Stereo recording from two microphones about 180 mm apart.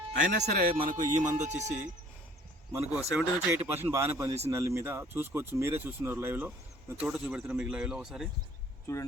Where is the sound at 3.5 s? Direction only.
15° right (ahead or behind).